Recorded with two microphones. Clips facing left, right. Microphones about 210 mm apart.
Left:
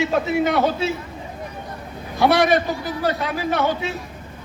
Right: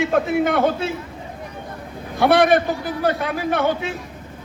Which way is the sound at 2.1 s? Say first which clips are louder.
Right 2 dB; 55° right (ahead or behind).